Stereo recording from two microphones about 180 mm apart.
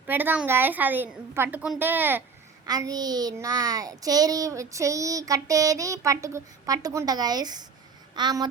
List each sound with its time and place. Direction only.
0.1 s a woman's voice: 10° right (ahead or behind)
2.6 s child singing: 20° right (ahead or behind)